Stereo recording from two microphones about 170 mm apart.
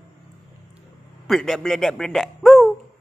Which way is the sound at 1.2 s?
Centre (ahead or behind).